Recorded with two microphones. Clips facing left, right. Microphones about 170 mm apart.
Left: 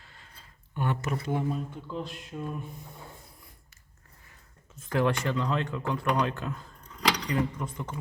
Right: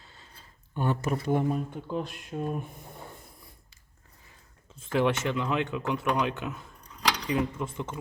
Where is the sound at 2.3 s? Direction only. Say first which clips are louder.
Right 5 dB; 40° right (ahead or behind).